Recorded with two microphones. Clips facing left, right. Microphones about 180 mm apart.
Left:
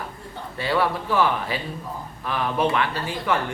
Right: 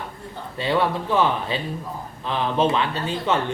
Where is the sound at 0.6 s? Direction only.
20° right (ahead or behind).